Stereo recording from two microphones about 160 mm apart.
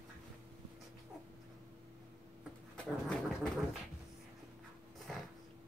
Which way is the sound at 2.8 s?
5° left (ahead or behind).